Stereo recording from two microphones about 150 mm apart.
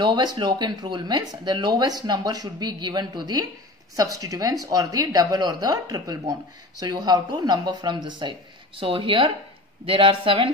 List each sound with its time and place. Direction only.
0.0 s speech: 30° right (ahead or behind)